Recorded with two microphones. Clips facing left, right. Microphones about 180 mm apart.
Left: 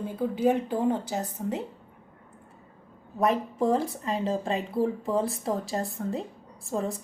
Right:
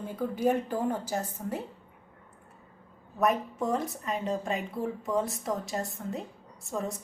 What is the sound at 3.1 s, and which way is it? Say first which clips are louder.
A woman's voice: left 2 dB; 30° left (ahead or behind).